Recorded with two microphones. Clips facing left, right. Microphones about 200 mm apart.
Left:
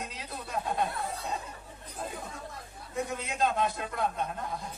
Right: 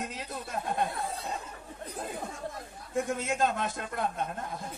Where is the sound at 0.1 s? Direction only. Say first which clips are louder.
Even; 50° right (ahead or behind).